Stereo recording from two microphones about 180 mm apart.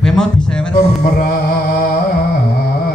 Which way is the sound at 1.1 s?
55° left (ahead or behind).